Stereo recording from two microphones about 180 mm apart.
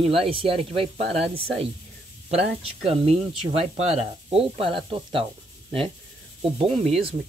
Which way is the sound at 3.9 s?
35° right (ahead or behind).